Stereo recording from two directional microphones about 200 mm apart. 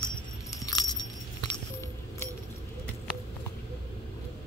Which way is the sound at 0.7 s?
20° left (ahead or behind).